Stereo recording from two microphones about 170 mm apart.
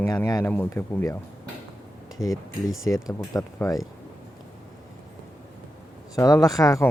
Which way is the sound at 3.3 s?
20° left (ahead or behind).